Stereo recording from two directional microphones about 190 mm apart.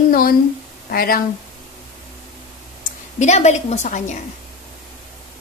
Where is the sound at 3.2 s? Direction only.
35° left (ahead or behind).